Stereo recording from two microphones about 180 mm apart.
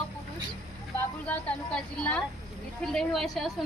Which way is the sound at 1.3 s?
5° left (ahead or behind).